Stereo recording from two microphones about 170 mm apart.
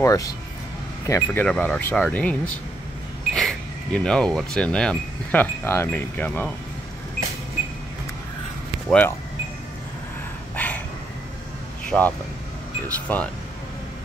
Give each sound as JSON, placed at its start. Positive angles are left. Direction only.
{"t": 0.0, "sound": "speech", "side_deg": 20}
{"t": 3.3, "sound": "wind chime", "side_deg": 5}
{"t": 8.8, "sound": "speech", "side_deg": 10}
{"t": 10.5, "sound": "dog", "side_deg": 10}
{"t": 11.9, "sound": "wind chime", "side_deg": 5}
{"t": 12.8, "sound": "speech", "side_deg": 10}